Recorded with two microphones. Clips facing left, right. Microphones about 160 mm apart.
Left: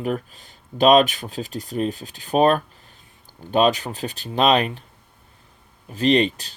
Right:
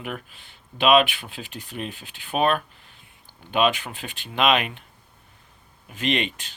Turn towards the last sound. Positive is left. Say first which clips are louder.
# left 8 dB
turn(degrees=35)  # may be behind; listen again after turning